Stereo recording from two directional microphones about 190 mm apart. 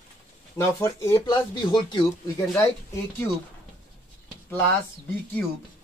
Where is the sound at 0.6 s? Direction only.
15° left (ahead or behind).